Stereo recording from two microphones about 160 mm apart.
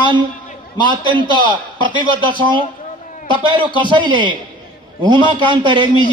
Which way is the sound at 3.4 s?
30° right (ahead or behind).